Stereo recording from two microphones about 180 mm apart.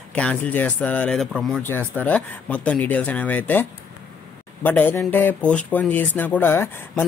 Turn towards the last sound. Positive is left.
turn(degrees=10)  # may be behind; listen again after turning